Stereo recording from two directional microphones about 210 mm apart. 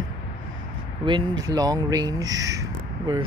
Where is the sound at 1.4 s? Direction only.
15° right (ahead or behind).